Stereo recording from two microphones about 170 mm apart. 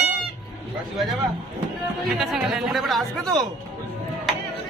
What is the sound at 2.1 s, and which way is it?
Speech, centre (ahead or behind).